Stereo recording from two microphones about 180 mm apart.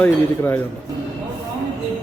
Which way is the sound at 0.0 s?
10° left (ahead or behind).